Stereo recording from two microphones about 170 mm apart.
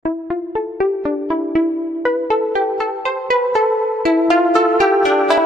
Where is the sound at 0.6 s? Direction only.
Centre (ahead or behind).